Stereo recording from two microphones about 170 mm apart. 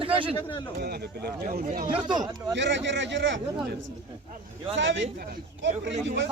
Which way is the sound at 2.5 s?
90° right.